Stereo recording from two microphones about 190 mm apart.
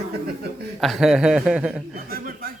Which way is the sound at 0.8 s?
Centre (ahead or behind).